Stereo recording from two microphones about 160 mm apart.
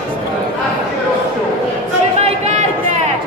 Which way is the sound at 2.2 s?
45° right (ahead or behind).